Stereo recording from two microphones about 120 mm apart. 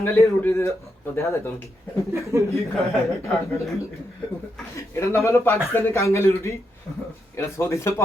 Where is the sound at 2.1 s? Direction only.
25° right (ahead or behind).